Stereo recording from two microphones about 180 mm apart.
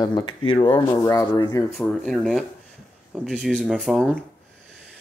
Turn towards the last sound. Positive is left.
turn(degrees=0)  # may be behind; listen again after turning